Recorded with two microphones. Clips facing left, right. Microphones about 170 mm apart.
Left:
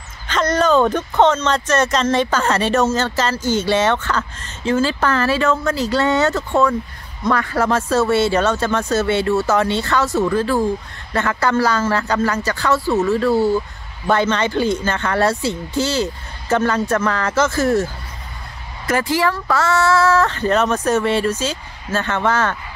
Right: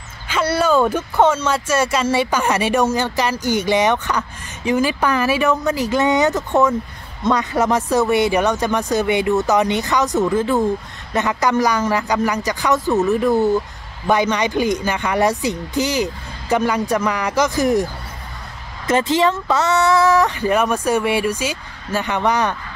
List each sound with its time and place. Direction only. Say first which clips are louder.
0.3 s speech: left 1 dB; 10° right (ahead or behind)
18.9 s speech: right 2 dB; 20° right (ahead or behind)